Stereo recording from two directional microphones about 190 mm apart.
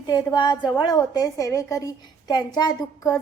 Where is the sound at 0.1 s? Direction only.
20° left (ahead or behind).